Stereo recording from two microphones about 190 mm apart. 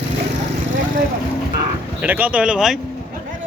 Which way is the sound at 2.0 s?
10° right (ahead or behind).